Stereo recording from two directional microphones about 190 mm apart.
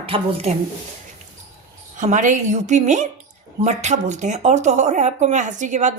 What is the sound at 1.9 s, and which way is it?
Speech, 40° right (ahead or behind).